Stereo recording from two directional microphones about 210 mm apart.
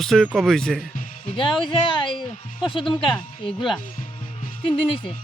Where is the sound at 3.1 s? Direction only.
Centre (ahead or behind).